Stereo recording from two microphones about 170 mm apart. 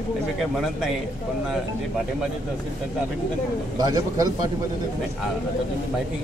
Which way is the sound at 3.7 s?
20° right (ahead or behind).